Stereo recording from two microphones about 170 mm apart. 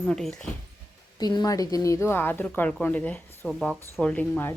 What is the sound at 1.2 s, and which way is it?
Speech, 25° left (ahead or behind).